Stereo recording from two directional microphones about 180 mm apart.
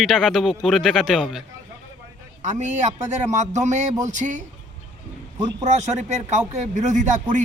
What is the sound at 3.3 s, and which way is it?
Speech, 40° right (ahead or behind).